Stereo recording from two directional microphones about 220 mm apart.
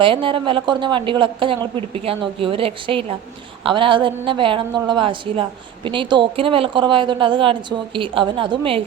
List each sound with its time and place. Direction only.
0.0 s a woman's voice: 25° right (ahead or behind)